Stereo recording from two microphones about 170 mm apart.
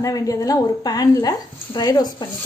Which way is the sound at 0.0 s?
20° left (ahead or behind).